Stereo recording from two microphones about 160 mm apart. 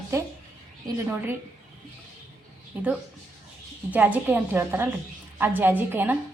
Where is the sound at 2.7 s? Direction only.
10° right (ahead or behind).